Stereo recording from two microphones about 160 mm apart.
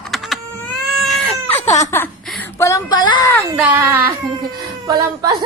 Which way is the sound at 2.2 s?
5° left (ahead or behind).